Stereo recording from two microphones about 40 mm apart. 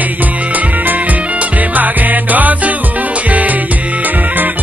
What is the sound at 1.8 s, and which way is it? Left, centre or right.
Music, right.